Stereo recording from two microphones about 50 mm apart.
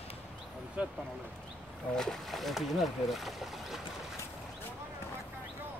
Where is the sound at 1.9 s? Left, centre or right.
Centre.